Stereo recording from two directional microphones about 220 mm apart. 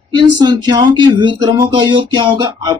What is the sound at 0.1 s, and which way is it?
Speech, 20° right (ahead or behind).